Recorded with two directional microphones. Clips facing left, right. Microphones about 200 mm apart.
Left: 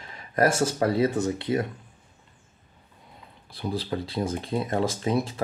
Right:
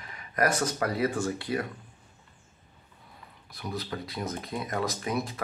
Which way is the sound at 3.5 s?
30° left (ahead or behind).